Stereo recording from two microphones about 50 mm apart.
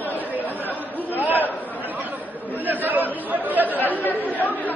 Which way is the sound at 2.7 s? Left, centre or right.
Right.